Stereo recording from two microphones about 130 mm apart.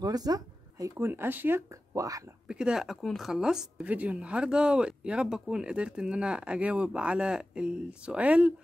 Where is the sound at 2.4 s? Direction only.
5° right (ahead or behind).